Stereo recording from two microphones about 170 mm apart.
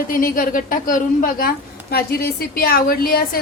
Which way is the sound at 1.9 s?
65° left (ahead or behind).